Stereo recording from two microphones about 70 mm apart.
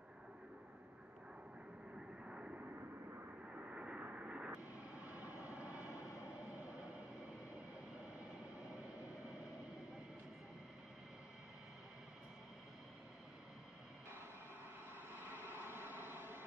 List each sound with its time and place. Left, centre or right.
2.0 s vehicle: centre
6.0 s vehicle: left
15.1 s vehicle: right